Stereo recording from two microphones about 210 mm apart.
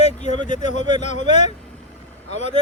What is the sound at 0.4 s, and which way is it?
Speech, 35° left (ahead or behind).